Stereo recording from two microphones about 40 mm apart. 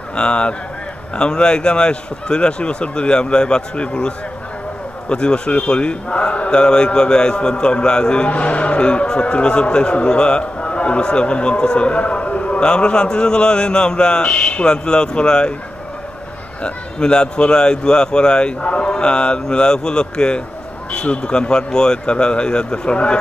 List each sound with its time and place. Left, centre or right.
0.1 s a man's voice: left
5.1 s a man's voice: left
6.5 s a man's voice: left
8.3 s a man's voice: left
12.6 s a man's voice: left
16.6 s a man's voice: left